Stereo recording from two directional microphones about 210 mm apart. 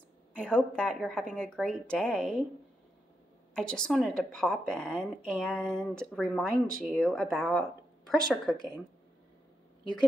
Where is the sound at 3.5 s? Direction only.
5° left (ahead or behind).